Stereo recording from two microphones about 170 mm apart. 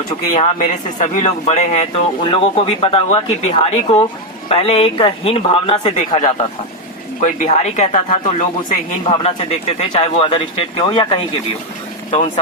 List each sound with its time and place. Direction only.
0.3 s speech: 40° left (ahead or behind)
12.1 s speech: 40° left (ahead or behind)